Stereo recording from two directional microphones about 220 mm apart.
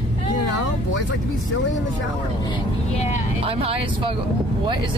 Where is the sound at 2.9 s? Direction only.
30° left (ahead or behind).